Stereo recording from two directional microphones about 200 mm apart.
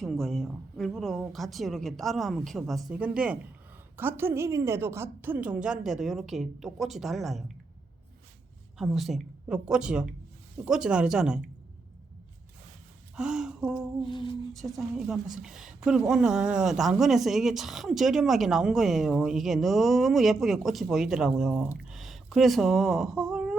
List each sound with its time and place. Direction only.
0.0 s a woman's voice: centre (ahead or behind)
8.8 s a woman's voice: centre (ahead or behind)
13.1 s speech: 5° right (ahead or behind)
14.1 s speech: 25° left (ahead or behind)
14.5 s a woman's voice: centre (ahead or behind)